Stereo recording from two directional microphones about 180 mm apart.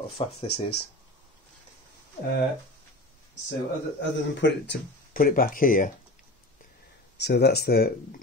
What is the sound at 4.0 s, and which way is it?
Speech, 75° left (ahead or behind).